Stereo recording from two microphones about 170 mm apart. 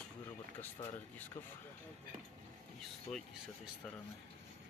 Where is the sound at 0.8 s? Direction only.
35° left (ahead or behind).